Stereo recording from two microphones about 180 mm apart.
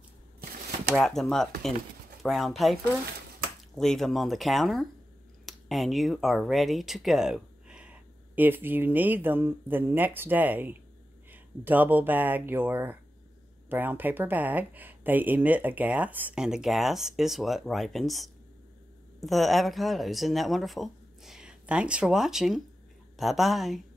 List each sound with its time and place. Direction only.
0.4 s shuffling cards: 55° right (ahead or behind)
0.9 s speech: centre (ahead or behind)